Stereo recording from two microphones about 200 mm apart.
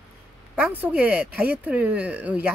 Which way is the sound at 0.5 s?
5° right (ahead or behind).